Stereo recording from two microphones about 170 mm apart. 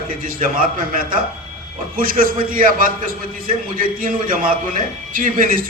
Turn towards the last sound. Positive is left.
turn(degrees=-55)  # may be behind; listen again after turning